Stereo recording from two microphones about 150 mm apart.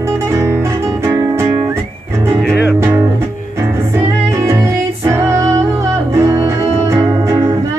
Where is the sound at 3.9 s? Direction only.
15° right (ahead or behind).